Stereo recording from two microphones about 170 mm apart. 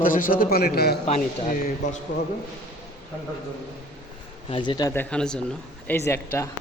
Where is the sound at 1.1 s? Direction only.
45° left (ahead or behind).